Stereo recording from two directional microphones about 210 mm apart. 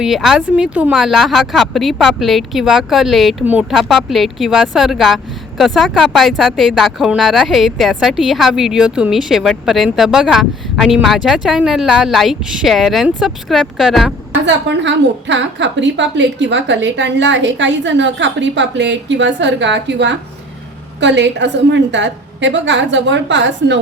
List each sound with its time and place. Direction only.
0.0 s speech: centre (ahead or behind)
14.4 s a woman's voice: 55° right (ahead or behind)